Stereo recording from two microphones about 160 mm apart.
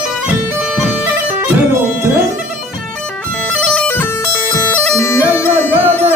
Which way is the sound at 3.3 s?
10° left (ahead or behind).